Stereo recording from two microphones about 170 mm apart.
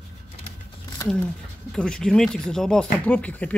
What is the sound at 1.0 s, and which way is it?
Speech, 5° left (ahead or behind).